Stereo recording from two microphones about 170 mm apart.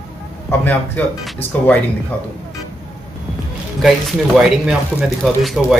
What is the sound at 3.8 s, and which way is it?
Speech, centre (ahead or behind).